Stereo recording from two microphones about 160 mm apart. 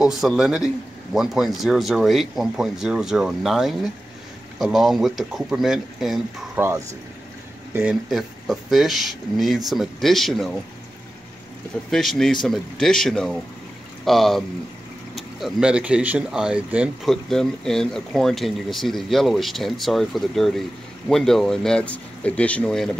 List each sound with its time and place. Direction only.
0.0 s speech: 5° right (ahead or behind)
7.7 s speech: 5° right (ahead or behind)
11.9 s speech: centre (ahead or behind)